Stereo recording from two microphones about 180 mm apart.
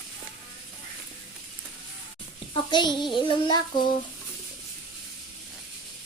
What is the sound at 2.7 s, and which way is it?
Child singing, 25° left (ahead or behind).